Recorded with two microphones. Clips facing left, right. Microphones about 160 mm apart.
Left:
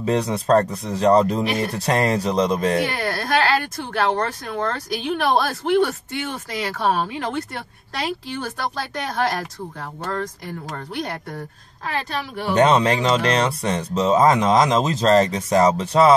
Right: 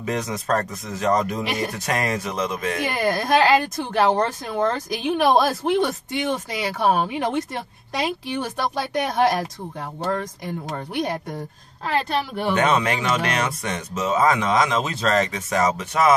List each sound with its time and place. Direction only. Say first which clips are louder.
0.0 s speech: left 5 dB; 30° left (ahead or behind)
3.0 s a woman's voice: right 3 dB; 20° right (ahead or behind)
12.5 s speech: left 6 dB; 35° left (ahead or behind)